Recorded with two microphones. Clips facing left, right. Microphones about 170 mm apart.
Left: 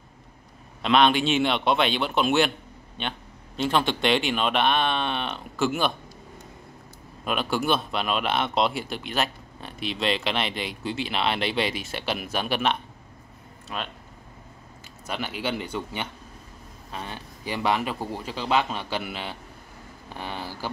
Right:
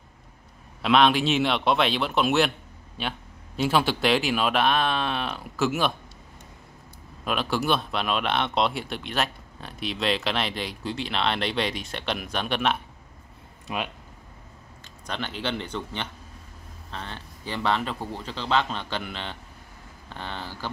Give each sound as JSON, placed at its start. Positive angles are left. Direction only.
{"t": 0.8, "sound": "speech", "side_deg": 0}
{"t": 7.2, "sound": "speech", "side_deg": 0}
{"t": 13.7, "sound": "speech", "side_deg": -15}
{"t": 15.0, "sound": "a man's voice", "side_deg": 10}